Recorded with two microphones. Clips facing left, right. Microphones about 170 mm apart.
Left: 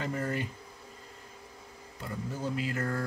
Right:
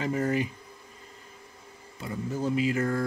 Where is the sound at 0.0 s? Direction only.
15° right (ahead or behind).